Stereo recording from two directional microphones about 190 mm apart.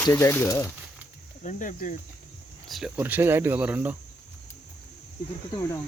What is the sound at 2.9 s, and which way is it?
Speech, 10° right (ahead or behind).